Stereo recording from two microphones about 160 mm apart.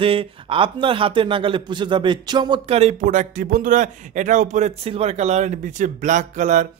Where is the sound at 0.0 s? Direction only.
35° right (ahead or behind).